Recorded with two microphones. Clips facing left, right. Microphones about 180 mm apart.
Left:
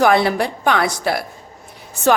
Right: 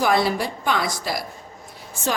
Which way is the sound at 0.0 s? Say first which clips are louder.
Left 5 dB; 60° left (ahead or behind).